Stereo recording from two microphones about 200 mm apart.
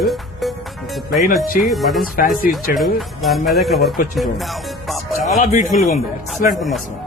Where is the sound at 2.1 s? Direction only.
45° left (ahead or behind).